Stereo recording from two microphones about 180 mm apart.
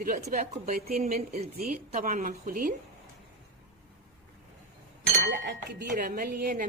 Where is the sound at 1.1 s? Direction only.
40° right (ahead or behind).